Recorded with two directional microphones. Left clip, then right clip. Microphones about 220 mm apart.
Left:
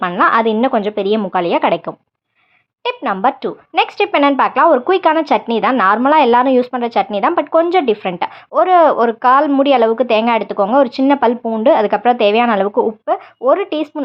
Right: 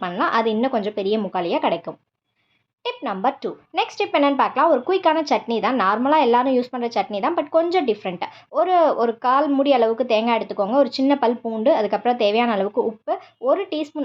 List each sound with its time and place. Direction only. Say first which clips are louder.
0.0 s a woman's voice: left 8 dB; 25° left (ahead or behind)